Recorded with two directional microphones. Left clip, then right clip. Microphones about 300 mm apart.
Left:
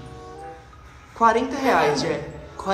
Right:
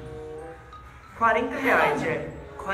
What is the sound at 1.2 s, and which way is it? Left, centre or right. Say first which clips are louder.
Speech: left 4 dB; centre.